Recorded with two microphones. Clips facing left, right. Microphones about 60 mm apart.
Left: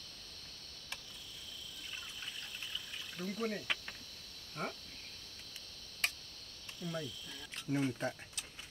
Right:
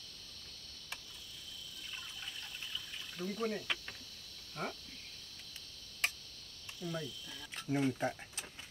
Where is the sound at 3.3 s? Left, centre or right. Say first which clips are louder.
Even; centre.